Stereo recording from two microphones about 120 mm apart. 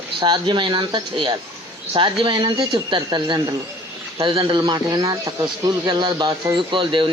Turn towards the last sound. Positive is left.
turn(degrees=-45)  # may be behind; listen again after turning